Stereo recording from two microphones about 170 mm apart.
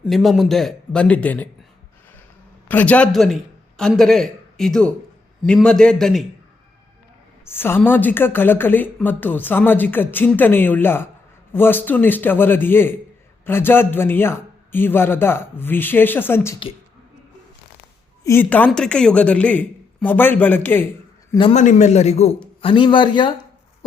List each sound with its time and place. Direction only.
0.0 s speech: centre (ahead or behind)
2.6 s a man's voice: 10° left (ahead or behind)
7.4 s a woman's voice: 15° left (ahead or behind)
18.2 s a woman's voice: 15° left (ahead or behind)
21.5 s a man's voice: 45° left (ahead or behind); by 23.5 s 30° left (ahead or behind)